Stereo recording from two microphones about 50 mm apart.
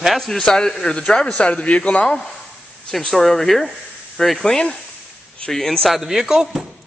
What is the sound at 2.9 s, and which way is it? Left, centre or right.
A man's voice, centre.